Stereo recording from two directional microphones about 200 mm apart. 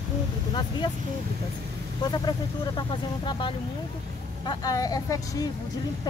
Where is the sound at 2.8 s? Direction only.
25° left (ahead or behind).